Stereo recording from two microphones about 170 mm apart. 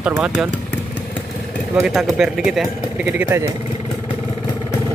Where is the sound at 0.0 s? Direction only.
5° right (ahead or behind).